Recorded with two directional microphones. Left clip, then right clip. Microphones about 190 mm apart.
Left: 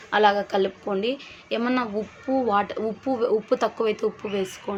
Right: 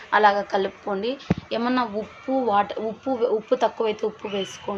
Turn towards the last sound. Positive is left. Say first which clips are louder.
# even
turn(degrees=20)  # may be behind; listen again after turning